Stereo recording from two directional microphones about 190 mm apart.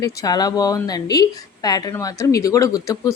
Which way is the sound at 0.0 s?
20° left (ahead or behind).